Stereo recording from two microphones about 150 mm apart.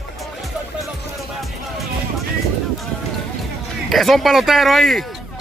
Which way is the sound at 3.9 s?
Centre (ahead or behind).